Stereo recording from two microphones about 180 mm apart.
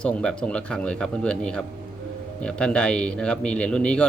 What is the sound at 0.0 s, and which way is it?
A man's voice, 5° left (ahead or behind).